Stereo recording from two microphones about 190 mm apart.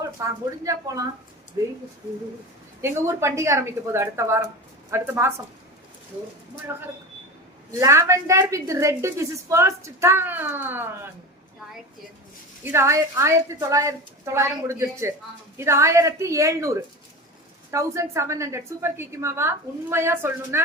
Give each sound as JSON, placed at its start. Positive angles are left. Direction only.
{"t": 0.3, "sound": "a woman's voice", "side_deg": -15}
{"t": 2.8, "sound": "a woman's voice", "side_deg": -15}
{"t": 6.7, "sound": "a woman's voice", "side_deg": -15}
{"t": 12.6, "sound": "a woman's voice", "side_deg": -15}